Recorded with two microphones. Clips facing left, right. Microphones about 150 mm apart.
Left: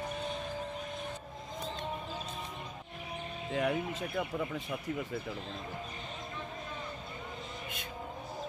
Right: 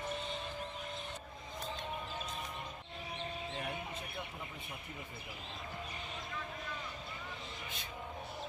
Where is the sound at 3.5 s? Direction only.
90° left.